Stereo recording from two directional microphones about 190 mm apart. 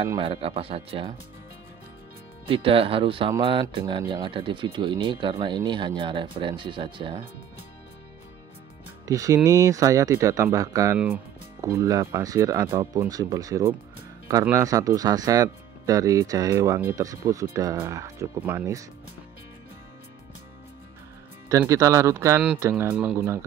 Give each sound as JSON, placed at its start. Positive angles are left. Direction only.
{"t": 0.2, "sound": "speech", "side_deg": -30}
{"t": 2.4, "sound": "speech", "side_deg": -30}
{"t": 9.0, "sound": "speech", "side_deg": -20}
{"t": 21.5, "sound": "speech", "side_deg": -15}